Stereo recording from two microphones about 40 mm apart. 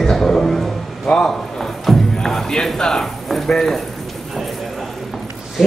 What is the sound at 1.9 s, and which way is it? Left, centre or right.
Music, centre.